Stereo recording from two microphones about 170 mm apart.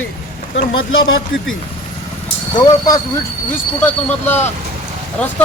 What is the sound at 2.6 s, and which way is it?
Speech, 20° left (ahead or behind).